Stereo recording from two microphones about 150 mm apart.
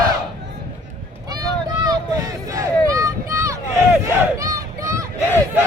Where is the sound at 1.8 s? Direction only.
25° right (ahead or behind).